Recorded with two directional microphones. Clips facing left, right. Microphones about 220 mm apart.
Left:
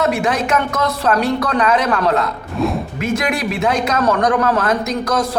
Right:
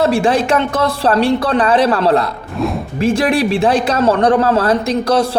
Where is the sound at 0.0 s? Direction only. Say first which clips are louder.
Right 4 dB; 30° right (ahead or behind).